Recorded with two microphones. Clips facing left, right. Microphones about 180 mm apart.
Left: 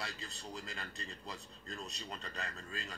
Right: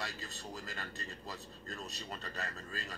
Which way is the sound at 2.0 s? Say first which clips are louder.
Right 3 dB; 40° right (ahead or behind).